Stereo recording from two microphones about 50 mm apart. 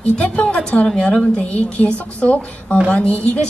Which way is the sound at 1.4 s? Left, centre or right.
Left.